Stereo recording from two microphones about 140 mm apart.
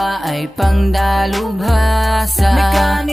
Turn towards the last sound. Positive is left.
turn(degrees=0)  # may be behind; listen again after turning